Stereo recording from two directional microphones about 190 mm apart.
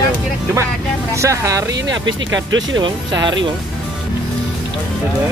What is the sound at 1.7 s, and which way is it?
Speech, 75° right (ahead or behind).